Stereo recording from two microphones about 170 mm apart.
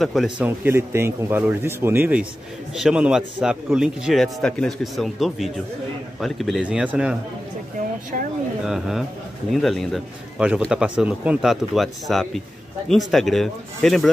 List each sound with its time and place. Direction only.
0.0 s a man's voice: centre (ahead or behind)
0.5 s a man's voice: 15° right (ahead or behind)
8.6 s a man's voice: centre (ahead or behind)